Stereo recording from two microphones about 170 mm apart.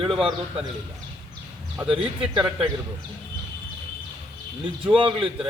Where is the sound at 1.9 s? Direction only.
30° right (ahead or behind).